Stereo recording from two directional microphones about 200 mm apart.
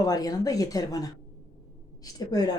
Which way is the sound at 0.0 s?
20° left (ahead or behind).